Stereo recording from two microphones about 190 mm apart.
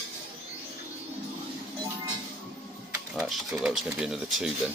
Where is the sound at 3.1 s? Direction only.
Centre (ahead or behind).